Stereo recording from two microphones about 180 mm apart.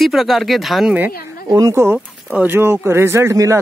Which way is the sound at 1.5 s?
20° right (ahead or behind).